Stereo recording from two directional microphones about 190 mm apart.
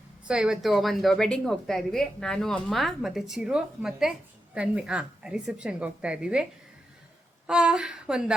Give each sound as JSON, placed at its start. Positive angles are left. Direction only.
{"t": 0.3, "sound": "a woman's voice", "side_deg": -5}
{"t": 7.4, "sound": "a woman's voice", "side_deg": -5}